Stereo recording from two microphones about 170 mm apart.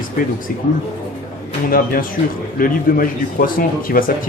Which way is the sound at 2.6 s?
55° left (ahead or behind).